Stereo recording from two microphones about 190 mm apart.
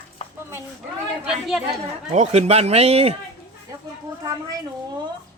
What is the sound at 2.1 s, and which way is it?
Speech, 35° right (ahead or behind).